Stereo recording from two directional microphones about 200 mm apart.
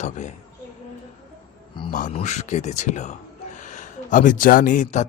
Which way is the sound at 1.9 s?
35° left (ahead or behind).